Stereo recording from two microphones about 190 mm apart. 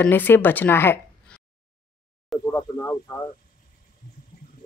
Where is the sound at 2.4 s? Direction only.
15° left (ahead or behind).